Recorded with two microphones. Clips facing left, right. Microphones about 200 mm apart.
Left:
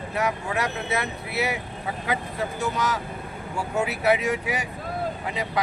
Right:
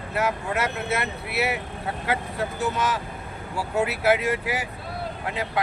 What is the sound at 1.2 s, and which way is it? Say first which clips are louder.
Speech: right 3 dB; 70° right (ahead or behind).